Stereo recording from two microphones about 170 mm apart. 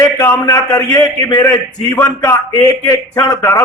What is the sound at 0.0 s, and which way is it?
A man's voice, 15° left (ahead or behind).